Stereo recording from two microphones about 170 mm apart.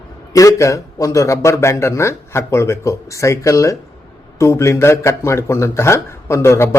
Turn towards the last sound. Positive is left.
turn(degrees=15)  # may be behind; listen again after turning